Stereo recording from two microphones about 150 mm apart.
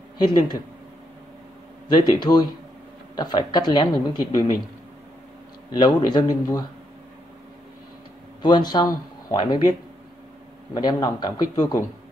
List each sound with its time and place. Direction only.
0.2 s speech: 30° left (ahead or behind)
1.9 s speech: 30° left (ahead or behind)
5.7 s speech: 30° left (ahead or behind)
8.4 s speech: 30° left (ahead or behind)
10.7 s speech: 25° left (ahead or behind)